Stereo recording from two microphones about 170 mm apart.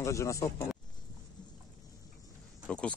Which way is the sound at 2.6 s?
5° left (ahead or behind).